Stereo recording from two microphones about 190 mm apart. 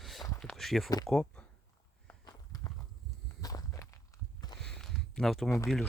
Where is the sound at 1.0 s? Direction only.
5° left (ahead or behind).